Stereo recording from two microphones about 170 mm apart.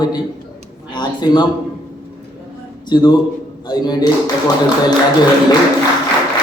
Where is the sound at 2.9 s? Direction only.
25° left (ahead or behind).